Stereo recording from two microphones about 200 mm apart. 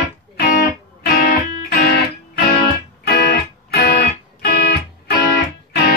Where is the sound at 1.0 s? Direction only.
45° left (ahead or behind).